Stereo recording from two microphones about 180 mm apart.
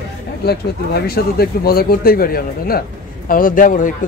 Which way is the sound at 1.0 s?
55° left (ahead or behind).